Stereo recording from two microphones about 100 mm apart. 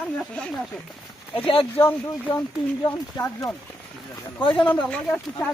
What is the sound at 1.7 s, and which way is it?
Speech, 20° left (ahead or behind).